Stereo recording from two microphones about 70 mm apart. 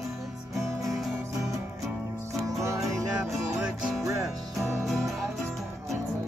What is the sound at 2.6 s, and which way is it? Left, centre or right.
Music, right.